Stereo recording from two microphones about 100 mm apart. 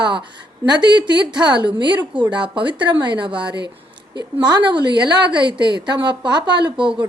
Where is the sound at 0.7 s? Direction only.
50° right (ahead or behind).